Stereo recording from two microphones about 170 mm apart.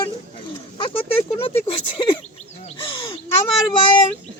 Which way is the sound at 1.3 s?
35° left (ahead or behind).